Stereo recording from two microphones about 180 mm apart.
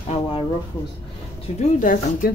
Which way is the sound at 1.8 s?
50° left (ahead or behind).